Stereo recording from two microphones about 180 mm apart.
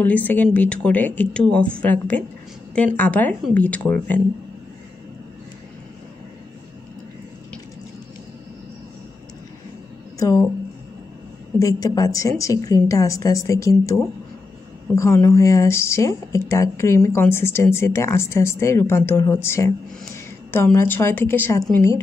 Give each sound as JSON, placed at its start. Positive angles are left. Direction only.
{"t": 0.0, "sound": "speech", "side_deg": 10}
{"t": 10.1, "sound": "speech", "side_deg": 15}
{"t": 11.6, "sound": "speech", "side_deg": 20}